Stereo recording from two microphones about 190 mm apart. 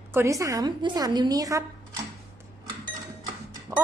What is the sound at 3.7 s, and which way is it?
Speech, 15° right (ahead or behind).